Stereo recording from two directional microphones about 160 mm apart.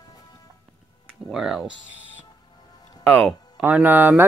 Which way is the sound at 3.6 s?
10° right (ahead or behind).